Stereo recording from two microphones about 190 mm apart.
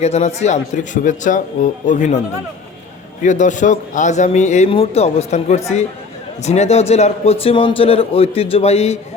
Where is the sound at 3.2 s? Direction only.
40° left (ahead or behind).